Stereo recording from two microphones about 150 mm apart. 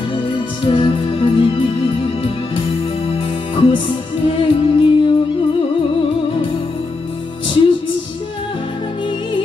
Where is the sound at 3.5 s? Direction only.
35° left (ahead or behind).